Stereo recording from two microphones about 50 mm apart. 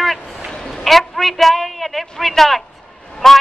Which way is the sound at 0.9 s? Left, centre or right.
Centre.